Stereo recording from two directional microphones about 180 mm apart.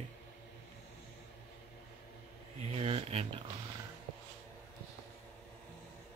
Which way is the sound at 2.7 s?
35° right (ahead or behind).